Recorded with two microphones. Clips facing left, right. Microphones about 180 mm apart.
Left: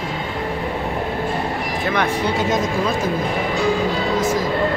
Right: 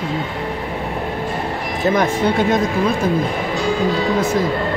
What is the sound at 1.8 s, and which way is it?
Speech, 40° right (ahead or behind).